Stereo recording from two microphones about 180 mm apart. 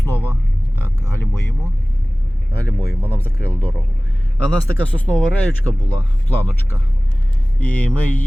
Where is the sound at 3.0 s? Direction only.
10° left (ahead or behind).